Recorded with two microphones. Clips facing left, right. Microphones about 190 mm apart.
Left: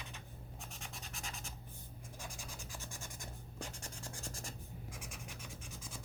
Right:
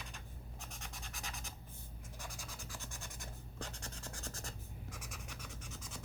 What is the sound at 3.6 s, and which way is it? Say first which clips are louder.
Scratch: even; 10° left (ahead or behind).